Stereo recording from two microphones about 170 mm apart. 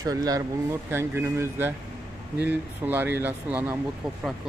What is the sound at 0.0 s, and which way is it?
Speech, 20° right (ahead or behind).